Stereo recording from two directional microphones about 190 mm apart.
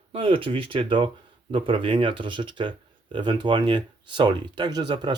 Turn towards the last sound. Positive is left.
turn(degrees=-25)  # may be behind; listen again after turning